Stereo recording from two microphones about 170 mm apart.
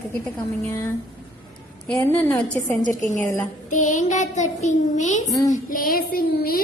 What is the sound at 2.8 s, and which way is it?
A woman's voice, 50° left (ahead or behind).